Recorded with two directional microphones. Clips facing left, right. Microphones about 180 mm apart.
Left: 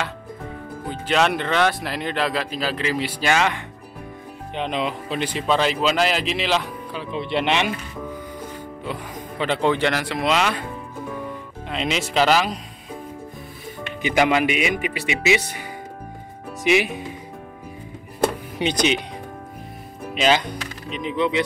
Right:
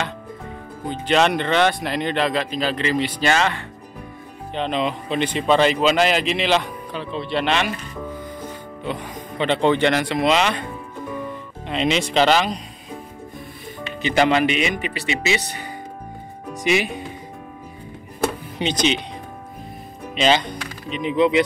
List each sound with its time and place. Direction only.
1.0 s speech: 5° left (ahead or behind)
7.2 s speech: 20° left (ahead or behind)
8.8 s speech: 5° left (ahead or behind)
14.0 s speech: 10° left (ahead or behind)
16.6 s speech: 5° left (ahead or behind)
18.6 s speech: 10° left (ahead or behind)
20.2 s speech: 5° left (ahead or behind)